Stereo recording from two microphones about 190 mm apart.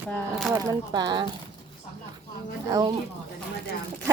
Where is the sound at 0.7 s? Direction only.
20° right (ahead or behind).